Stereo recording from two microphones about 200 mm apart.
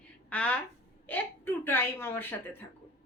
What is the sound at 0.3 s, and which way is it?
Speech, 5° left (ahead or behind).